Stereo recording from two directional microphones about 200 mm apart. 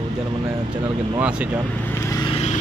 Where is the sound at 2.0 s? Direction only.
25° left (ahead or behind).